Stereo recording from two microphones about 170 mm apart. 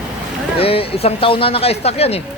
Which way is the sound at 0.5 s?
35° left (ahead or behind).